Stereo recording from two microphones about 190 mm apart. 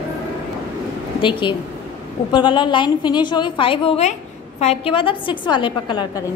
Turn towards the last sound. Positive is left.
turn(degrees=25)  # may be behind; listen again after turning